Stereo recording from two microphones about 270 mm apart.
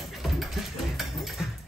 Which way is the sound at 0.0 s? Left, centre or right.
Centre.